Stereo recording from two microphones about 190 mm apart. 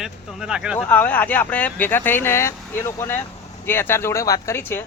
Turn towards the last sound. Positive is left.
turn(degrees=10)  # may be behind; listen again after turning